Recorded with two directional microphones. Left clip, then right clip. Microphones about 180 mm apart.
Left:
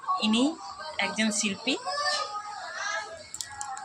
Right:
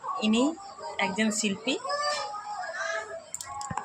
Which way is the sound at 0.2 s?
20° right (ahead or behind).